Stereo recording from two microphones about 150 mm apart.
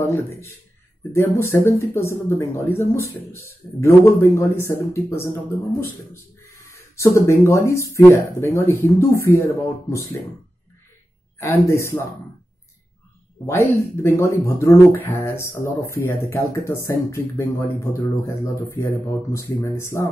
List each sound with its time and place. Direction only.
0.0 s speech: 15° left (ahead or behind)
11.3 s speech: 20° left (ahead or behind)
13.5 s speech: 20° left (ahead or behind)